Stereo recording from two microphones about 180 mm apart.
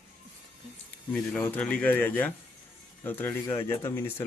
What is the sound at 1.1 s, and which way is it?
Speech, 10° left (ahead or behind).